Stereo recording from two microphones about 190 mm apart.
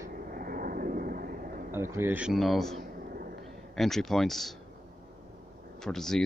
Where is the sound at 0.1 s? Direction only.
50° right (ahead or behind).